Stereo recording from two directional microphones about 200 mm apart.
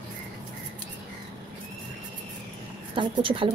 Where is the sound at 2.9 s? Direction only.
25° right (ahead or behind).